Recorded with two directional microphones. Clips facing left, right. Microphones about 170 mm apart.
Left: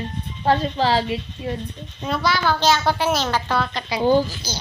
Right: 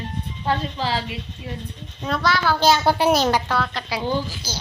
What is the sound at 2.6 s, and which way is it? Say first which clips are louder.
A child's voice: right 5 dB; 15° right (ahead or behind).